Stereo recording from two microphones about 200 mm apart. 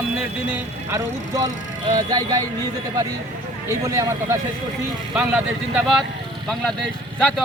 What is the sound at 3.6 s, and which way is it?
Speech, 15° right (ahead or behind).